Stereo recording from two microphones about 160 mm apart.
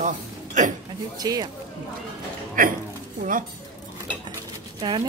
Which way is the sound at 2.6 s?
60° right (ahead or behind).